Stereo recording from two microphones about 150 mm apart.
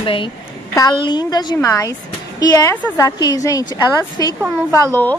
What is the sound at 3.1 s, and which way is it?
A woman's voice, 25° left (ahead or behind).